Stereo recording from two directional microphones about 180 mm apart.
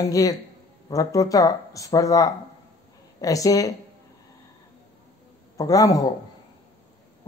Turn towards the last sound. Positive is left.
turn(degrees=20)  # may be behind; listen again after turning